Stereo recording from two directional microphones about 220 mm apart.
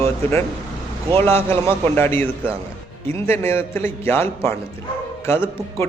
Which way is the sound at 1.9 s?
10° left (ahead or behind).